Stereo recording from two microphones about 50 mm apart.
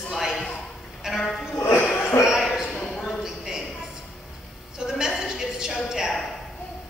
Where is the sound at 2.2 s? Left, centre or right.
Centre.